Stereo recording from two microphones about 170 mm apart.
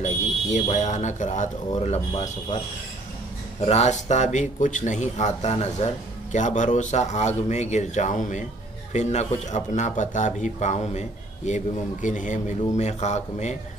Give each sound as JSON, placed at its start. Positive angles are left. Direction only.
{"t": 0.0, "sound": "speech", "side_deg": 40}
{"t": 3.6, "sound": "speech", "side_deg": 40}